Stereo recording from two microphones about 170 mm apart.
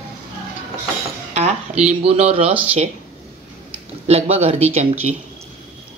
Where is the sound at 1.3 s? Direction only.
40° right (ahead or behind).